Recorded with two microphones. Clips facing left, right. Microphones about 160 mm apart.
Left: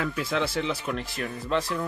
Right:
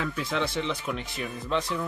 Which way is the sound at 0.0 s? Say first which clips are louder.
Left 2 dB; centre (ahead or behind).